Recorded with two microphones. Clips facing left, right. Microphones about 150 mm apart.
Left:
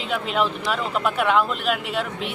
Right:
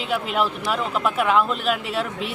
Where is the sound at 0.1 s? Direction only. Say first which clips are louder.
Even; 5° right (ahead or behind).